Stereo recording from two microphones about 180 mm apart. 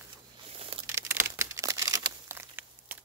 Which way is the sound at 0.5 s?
30° right (ahead or behind).